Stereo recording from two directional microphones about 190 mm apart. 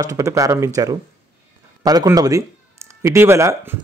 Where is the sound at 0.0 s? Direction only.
15° right (ahead or behind).